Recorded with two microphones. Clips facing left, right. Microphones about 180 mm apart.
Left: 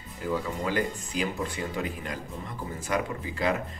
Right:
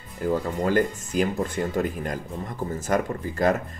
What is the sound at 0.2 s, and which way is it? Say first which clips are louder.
Speech: right 5 dB; 45° right (ahead or behind).